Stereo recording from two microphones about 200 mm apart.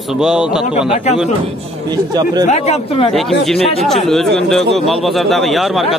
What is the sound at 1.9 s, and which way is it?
Speech, 20° right (ahead or behind).